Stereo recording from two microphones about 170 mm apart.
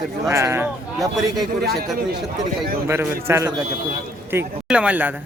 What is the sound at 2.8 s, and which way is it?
Speech, 15° right (ahead or behind).